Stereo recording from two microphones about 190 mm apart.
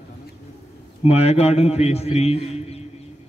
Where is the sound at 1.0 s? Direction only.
35° left (ahead or behind).